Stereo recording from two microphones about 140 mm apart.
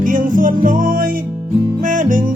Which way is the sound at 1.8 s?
70° right (ahead or behind).